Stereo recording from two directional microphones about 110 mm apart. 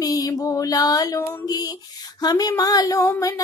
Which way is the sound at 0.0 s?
35° left (ahead or behind).